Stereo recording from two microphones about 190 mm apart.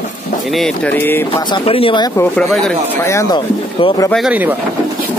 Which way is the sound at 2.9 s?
15° left (ahead or behind).